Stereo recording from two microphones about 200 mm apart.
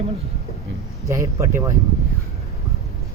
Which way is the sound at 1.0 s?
15° right (ahead or behind).